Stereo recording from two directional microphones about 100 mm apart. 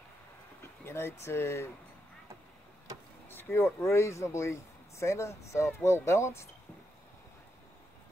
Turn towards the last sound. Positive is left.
turn(degrees=25)  # may be behind; listen again after turning